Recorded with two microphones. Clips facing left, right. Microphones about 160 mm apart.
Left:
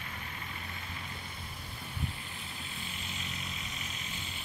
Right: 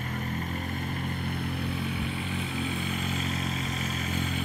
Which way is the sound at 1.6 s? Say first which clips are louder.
Right 11 dB; 70° right (ahead or behind).